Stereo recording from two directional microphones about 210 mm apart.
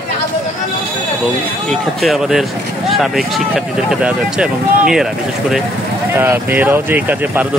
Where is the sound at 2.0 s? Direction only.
Centre (ahead or behind).